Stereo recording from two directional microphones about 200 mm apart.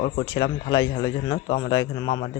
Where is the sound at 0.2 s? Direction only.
20° left (ahead or behind).